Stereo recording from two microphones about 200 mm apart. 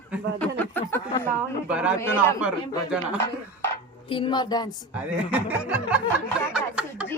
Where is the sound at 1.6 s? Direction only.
5° right (ahead or behind).